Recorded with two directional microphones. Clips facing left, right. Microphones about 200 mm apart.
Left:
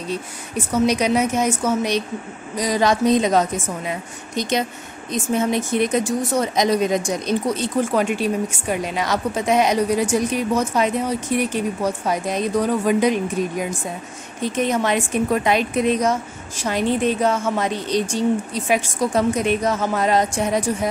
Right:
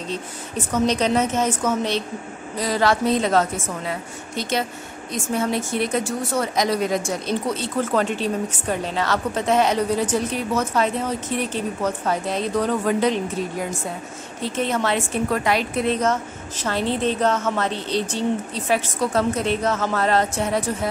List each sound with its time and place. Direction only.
0.7 s speech: 10° left (ahead or behind)